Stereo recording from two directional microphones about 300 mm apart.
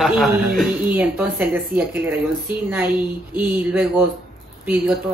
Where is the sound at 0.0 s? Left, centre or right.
Centre.